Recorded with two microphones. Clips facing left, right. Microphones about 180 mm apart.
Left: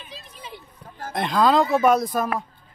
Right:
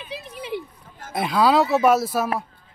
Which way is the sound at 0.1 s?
65° right (ahead or behind).